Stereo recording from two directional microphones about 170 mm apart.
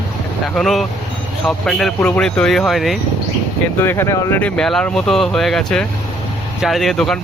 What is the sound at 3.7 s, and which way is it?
Speech, 15° left (ahead or behind).